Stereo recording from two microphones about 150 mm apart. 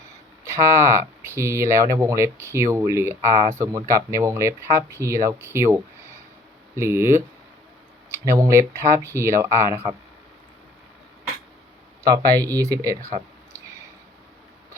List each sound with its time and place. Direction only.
0.5 s speech: 20° right (ahead or behind)
12.0 s speech: 25° right (ahead or behind)